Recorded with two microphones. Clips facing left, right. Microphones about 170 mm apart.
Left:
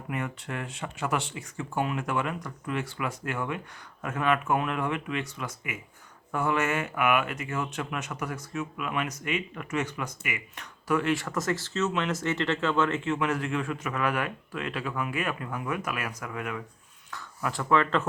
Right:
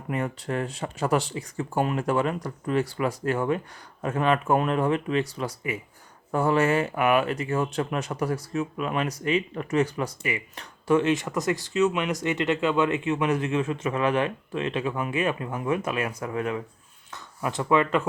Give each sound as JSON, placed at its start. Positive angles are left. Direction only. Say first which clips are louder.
{"t": 0.1, "sound": "speech", "louder": "right 5 dB", "side_deg": -35}